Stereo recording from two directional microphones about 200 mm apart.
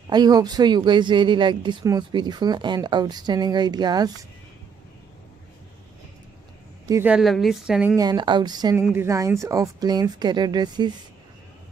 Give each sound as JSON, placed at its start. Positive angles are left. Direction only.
{"t": 0.1, "sound": "speech", "side_deg": -20}
{"t": 6.9, "sound": "a woman's voice", "side_deg": -10}
{"t": 7.9, "sound": "speech", "side_deg": -20}